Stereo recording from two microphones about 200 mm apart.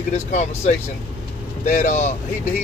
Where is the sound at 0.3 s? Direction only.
35° left (ahead or behind).